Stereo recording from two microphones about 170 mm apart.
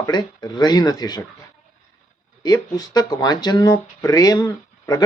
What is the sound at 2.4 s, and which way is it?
Speech, 20° left (ahead or behind).